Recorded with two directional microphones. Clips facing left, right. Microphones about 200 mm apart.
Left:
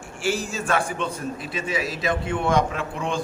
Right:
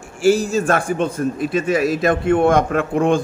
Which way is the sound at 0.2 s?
40° right (ahead or behind).